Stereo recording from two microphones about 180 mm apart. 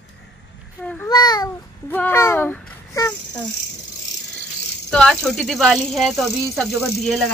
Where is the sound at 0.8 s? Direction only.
5° left (ahead or behind).